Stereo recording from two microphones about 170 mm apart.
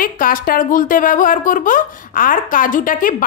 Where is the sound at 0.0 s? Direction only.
55° left (ahead or behind).